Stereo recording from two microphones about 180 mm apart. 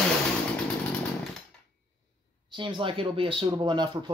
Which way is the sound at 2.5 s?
30° right (ahead or behind).